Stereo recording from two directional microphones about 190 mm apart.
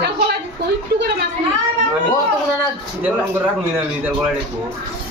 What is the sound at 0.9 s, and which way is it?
Speech, 60° right (ahead or behind).